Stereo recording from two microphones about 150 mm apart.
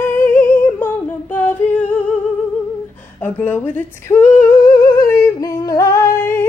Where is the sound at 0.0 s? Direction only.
15° left (ahead or behind).